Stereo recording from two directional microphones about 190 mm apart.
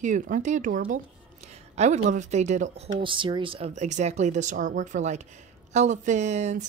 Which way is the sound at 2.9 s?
25° right (ahead or behind).